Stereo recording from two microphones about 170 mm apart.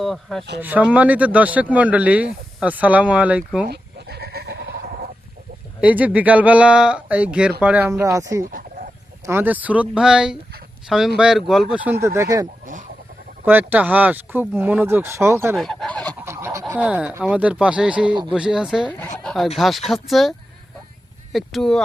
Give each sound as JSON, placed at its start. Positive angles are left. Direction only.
{"t": 0.0, "sound": "speech", "side_deg": 0}
{"t": 0.6, "sound": "speech", "side_deg": -10}
{"t": 3.7, "sound": "bleat", "side_deg": -70}
{"t": 5.8, "sound": "speech", "side_deg": -10}
{"t": 8.4, "sound": "a sound", "side_deg": -55}
{"t": 9.2, "sound": "speech", "side_deg": -10}
{"t": 12.0, "sound": "speech", "side_deg": -15}
{"t": 15.5, "sound": "fowl", "side_deg": 0}
{"t": 16.2, "sound": "goose", "side_deg": -15}
{"t": 16.7, "sound": "speech", "side_deg": -5}
{"t": 18.1, "sound": "speech", "side_deg": -25}
{"t": 18.3, "sound": "speech", "side_deg": -5}
{"t": 21.3, "sound": "speech", "side_deg": 0}